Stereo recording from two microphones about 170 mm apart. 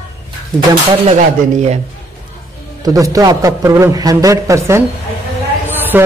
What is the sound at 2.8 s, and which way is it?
A man's voice, 20° right (ahead or behind).